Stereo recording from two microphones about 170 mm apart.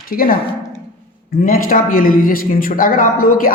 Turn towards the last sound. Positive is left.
turn(degrees=55)  # may be behind; listen again after turning